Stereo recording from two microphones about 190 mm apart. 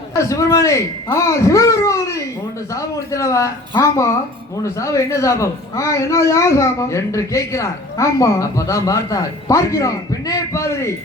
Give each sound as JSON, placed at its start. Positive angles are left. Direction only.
{"t": 0.2, "sound": "a woman's voice", "side_deg": 15}